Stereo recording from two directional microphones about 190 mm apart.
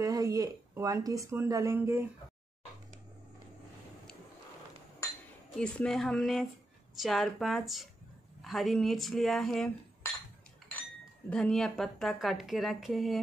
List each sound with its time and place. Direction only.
0.0 s speech: 20° right (ahead or behind)
5.6 s a woman's voice: 5° left (ahead or behind)
11.2 s a woman's voice: 5° left (ahead or behind)